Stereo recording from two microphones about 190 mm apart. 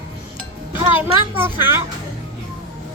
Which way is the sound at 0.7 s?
25° left (ahead or behind).